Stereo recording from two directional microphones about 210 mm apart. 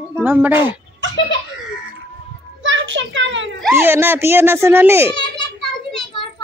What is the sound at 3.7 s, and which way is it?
A child's voice, 10° right (ahead or behind).